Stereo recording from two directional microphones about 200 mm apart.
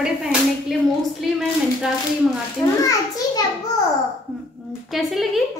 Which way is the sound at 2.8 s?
15° left (ahead or behind).